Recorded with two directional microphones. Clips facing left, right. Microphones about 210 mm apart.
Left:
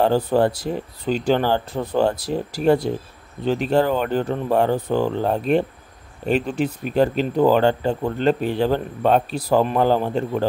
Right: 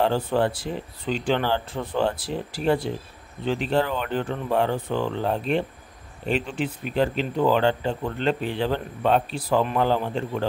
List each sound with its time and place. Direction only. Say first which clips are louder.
0.0 s speech: left 5 dB; 40° left (ahead or behind)